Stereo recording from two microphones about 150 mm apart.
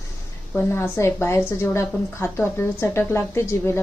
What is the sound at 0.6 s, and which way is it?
A woman's voice, 15° left (ahead or behind).